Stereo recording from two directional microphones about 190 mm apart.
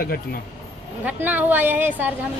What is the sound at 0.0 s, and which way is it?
Speech, 50° left (ahead or behind).